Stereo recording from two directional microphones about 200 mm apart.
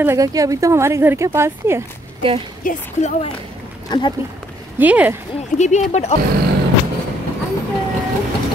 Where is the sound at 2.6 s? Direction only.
40° left (ahead or behind).